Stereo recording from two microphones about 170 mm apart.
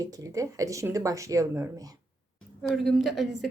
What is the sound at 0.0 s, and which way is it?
Speech, 20° right (ahead or behind).